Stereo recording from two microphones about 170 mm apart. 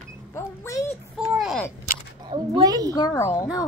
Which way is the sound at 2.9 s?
20° left (ahead or behind).